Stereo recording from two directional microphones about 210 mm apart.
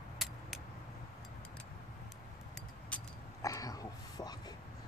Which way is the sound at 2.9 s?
15° left (ahead or behind).